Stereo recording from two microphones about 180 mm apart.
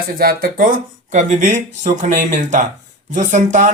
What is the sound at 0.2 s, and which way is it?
Speech, 55° right (ahead or behind).